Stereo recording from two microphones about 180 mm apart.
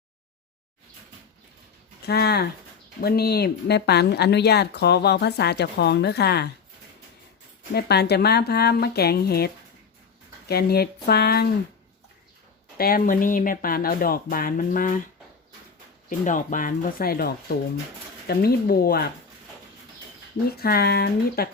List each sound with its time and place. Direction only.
2.0 s speech: 65° left (ahead or behind)
7.7 s speech: 65° left (ahead or behind)
10.5 s speech: 60° left (ahead or behind)
12.7 s speech: 55° left (ahead or behind)
16.0 s speech: 45° left (ahead or behind)
20.6 s speech: 60° left (ahead or behind)